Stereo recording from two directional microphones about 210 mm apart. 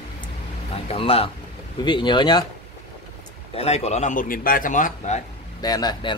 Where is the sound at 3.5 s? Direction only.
30° left (ahead or behind).